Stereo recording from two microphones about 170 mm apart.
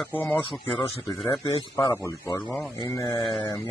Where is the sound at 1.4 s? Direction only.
25° left (ahead or behind).